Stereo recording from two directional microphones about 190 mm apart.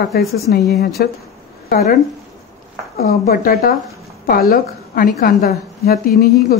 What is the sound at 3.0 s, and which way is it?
A woman's voice, 50° left (ahead or behind).